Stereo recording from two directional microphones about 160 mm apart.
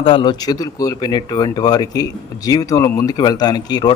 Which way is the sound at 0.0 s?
30° left (ahead or behind).